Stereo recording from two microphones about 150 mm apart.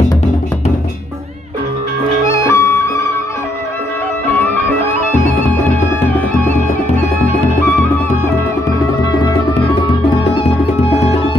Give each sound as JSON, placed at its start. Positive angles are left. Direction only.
{"t": 2.2, "sound": "music", "side_deg": 20}